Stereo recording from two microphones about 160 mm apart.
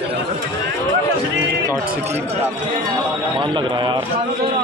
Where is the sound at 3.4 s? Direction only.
30° right (ahead or behind).